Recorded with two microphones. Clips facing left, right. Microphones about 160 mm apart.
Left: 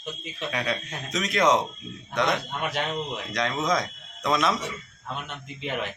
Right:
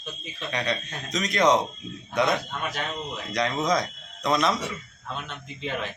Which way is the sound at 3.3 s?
Centre (ahead or behind).